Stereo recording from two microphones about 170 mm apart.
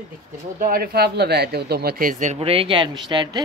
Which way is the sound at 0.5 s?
55° right (ahead or behind).